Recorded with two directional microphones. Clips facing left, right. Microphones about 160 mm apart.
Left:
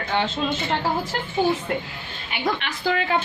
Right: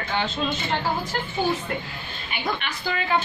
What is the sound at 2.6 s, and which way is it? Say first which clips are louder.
Speech: left 4 dB; 80° left.